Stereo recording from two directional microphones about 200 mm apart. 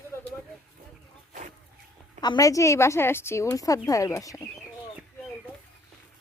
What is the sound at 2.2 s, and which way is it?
A woman's voice, 20° left (ahead or behind).